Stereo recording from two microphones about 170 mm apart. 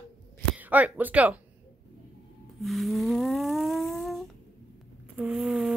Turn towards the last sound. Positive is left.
turn(degrees=0)  # may be behind; listen again after turning